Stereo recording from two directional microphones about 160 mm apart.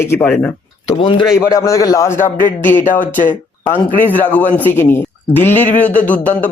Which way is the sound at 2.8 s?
55° left (ahead or behind).